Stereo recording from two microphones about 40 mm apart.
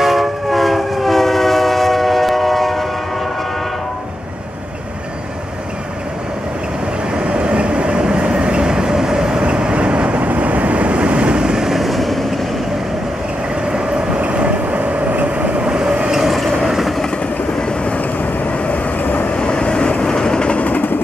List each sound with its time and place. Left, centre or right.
0.0 s train: centre
7.2 s train: right
9.4 s vehicle: right
11.7 s vehicle: centre
13.7 s train: right
16.1 s mechanisms: centre
16.6 s vehicle: centre
18.7 s vehicle: left
19.3 s train: left
20.5 s vehicle: left